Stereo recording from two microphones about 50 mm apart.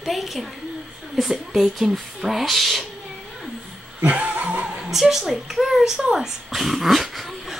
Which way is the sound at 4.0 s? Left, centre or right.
Right.